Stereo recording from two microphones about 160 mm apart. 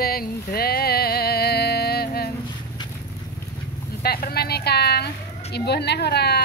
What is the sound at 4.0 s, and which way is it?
A woman's voice, 75° left (ahead or behind).